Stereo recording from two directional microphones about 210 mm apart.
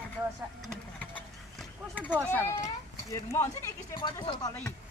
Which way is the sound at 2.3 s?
10° left (ahead or behind).